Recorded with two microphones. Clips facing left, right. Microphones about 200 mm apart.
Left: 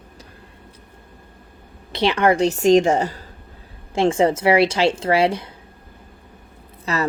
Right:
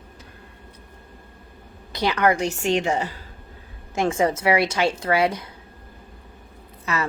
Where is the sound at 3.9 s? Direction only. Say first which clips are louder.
Left 4 dB; 30° left (ahead or behind).